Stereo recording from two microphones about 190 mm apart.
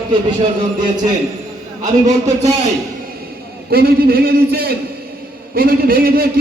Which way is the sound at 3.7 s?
55° right (ahead or behind).